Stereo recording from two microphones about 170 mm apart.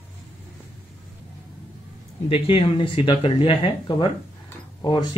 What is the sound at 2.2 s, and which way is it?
Speech, 30° left (ahead or behind).